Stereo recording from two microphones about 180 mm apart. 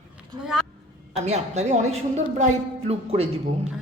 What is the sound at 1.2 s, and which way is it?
A woman's voice, 40° right (ahead or behind).